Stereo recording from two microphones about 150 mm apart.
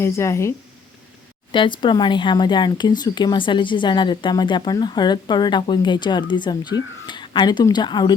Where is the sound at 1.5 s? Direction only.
30° left (ahead or behind).